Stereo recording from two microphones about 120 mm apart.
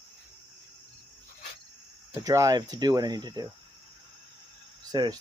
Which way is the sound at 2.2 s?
30° right (ahead or behind).